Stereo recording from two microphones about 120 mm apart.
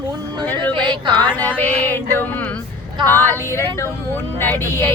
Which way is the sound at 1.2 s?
15° left (ahead or behind).